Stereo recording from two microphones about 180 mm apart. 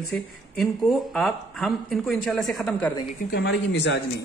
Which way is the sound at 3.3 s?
70° left (ahead or behind).